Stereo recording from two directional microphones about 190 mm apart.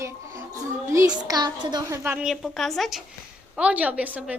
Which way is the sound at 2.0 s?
10° right (ahead or behind).